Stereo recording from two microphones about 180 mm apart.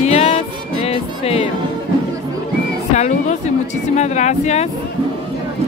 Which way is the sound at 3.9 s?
40° left (ahead or behind).